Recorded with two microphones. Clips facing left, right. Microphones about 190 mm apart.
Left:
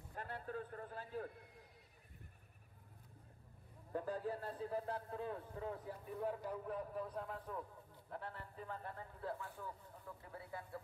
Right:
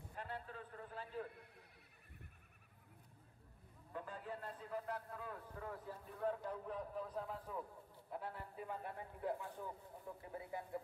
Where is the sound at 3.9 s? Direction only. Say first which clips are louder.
Left 7 dB; 40° left (ahead or behind); by 5.9 s 20° left (ahead or behind).